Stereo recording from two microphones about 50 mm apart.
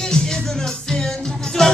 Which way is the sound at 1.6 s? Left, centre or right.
Centre.